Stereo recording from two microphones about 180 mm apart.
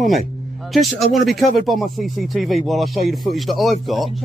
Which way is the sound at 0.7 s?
Centre (ahead or behind).